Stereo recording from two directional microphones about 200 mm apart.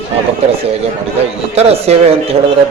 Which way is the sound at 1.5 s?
30° right (ahead or behind).